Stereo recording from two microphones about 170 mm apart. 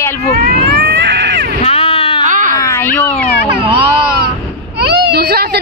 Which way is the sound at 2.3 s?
50° right (ahead or behind).